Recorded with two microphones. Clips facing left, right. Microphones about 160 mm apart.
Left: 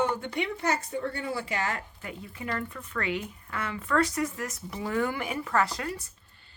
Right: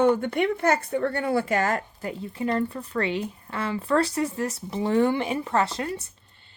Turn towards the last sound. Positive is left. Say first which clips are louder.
# right 3 dB
turn(degrees=-25)  # may be behind; listen again after turning